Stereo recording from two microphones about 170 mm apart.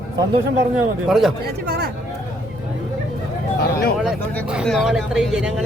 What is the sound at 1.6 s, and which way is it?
Speech, 75° right (ahead or behind).